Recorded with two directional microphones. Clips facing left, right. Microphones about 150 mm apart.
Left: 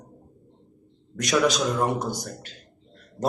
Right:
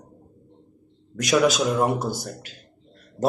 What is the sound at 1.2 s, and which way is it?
A man's voice, centre (ahead or behind).